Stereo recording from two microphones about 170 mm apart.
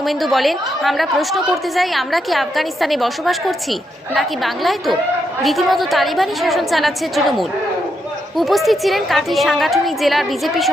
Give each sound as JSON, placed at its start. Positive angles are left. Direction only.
{"t": 0.0, "sound": "a woman's voice", "side_deg": 0}